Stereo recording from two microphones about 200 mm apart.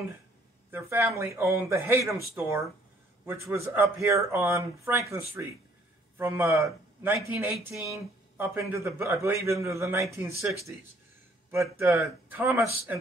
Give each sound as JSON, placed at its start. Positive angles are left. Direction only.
{"t": 0.7, "sound": "a man's voice", "side_deg": -10}
{"t": 11.8, "sound": "a man's voice", "side_deg": -15}